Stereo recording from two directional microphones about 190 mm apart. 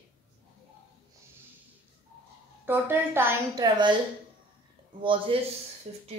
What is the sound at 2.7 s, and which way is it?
A woman's voice, 10° right (ahead or behind).